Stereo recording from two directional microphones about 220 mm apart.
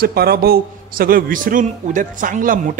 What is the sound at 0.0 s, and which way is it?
A man's voice, 45° right (ahead or behind).